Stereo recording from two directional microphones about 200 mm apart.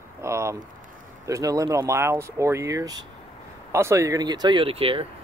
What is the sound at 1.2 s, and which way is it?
Speech, 15° right (ahead or behind).